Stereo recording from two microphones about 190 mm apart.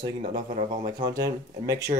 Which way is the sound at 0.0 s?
25° right (ahead or behind).